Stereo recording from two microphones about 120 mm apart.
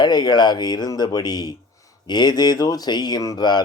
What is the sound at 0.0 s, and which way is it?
Speech, 35° left (ahead or behind).